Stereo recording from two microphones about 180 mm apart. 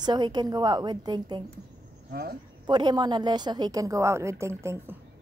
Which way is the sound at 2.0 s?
55° right (ahead or behind).